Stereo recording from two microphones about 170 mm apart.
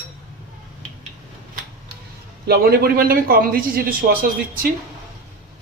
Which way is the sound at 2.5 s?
60° right (ahead or behind).